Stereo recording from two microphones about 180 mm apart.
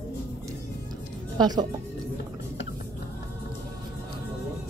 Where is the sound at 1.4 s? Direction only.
20° right (ahead or behind).